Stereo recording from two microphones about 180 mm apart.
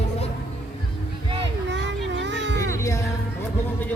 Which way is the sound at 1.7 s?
80° right.